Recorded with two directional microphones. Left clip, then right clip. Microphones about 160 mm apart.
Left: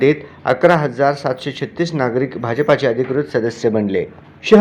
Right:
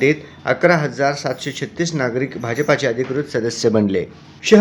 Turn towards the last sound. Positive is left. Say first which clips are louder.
# left 2 dB
turn(degrees=-10)  # may be behind; listen again after turning